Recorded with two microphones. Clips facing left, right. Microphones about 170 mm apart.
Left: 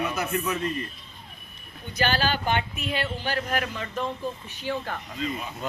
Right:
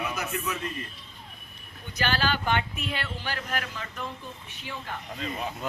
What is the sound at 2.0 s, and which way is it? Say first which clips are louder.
A woman's voice: left 2 dB; 35° left (ahead or behind).